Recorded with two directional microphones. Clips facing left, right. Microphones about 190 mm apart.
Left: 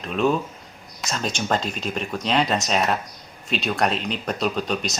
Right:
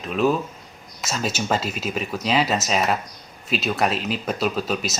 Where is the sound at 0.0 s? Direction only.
Centre (ahead or behind).